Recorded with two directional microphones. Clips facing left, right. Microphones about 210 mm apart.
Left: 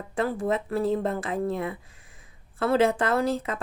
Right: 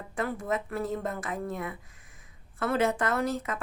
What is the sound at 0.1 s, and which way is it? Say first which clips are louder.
Speech: left 5 dB; 30° left (ahead or behind).